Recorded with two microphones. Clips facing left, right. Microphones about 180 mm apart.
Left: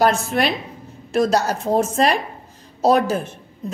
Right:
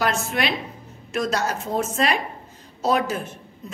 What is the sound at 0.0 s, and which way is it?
A woman's voice, 40° left (ahead or behind).